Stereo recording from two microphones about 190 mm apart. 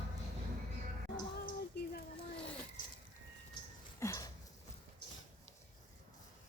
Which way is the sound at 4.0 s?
15° left (ahead or behind).